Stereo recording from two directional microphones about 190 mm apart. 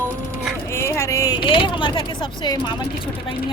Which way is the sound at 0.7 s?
15° left (ahead or behind).